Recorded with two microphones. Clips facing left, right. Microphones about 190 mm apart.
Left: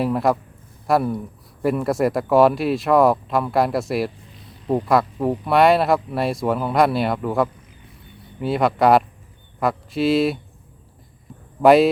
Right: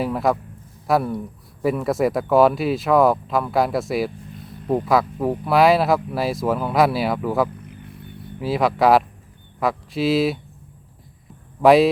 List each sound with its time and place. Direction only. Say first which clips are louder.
0.0 s speech: left 1 dB; centre (ahead or behind)
7.6 s a sound: right 8 dB; 60° right (ahead or behind)
8.4 s speech: left 1 dB; centre (ahead or behind)
11.6 s speech: even; centre (ahead or behind)